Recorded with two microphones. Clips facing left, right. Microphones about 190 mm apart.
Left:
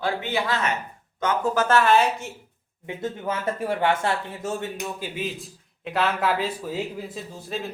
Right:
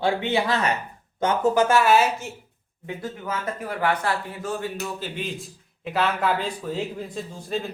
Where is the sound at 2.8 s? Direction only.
25° left (ahead or behind).